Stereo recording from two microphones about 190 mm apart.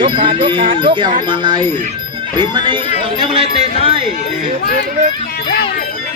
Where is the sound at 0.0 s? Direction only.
25° right (ahead or behind).